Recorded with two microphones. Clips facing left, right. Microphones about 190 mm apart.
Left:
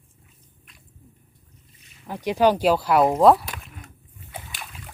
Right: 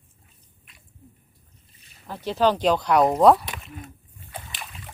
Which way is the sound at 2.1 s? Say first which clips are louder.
Left 2 dB; 15° left (ahead or behind).